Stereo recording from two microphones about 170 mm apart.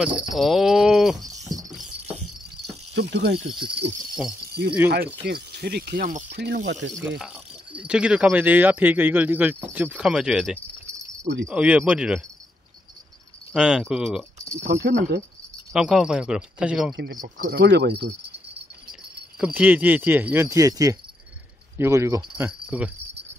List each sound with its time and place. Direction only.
0.3 s speech: centre (ahead or behind)
1.6 s music: centre (ahead or behind)
2.9 s speech: 85° right
3.3 s speech: 30° right (ahead or behind)
4.5 s keys jangling: 70° right (ahead or behind)
4.8 s speech: 70° right (ahead or behind); by 6.2 s 55° right (ahead or behind)
6.3 s speech: 75° right (ahead or behind); by 7.1 s 90° right
7.1 s speech: 5° right (ahead or behind)
13.6 s speech: 5° right (ahead or behind)
14.7 s speech: 85° right
15.7 s speech: 5° right (ahead or behind)
16.9 s speech: 80° right
19.3 s speech: 10° right (ahead or behind)
22.5 s speech: 5° right (ahead or behind)